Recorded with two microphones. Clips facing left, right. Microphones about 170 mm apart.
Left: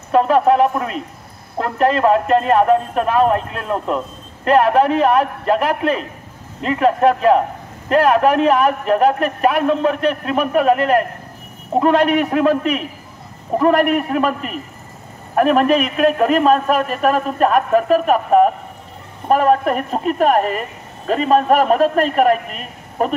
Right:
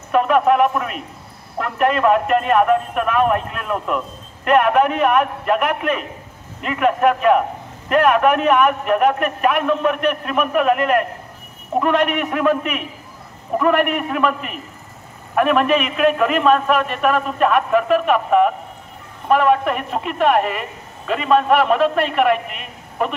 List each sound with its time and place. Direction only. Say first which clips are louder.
0.1 s a man's voice: left 2 dB; 35° left (ahead or behind)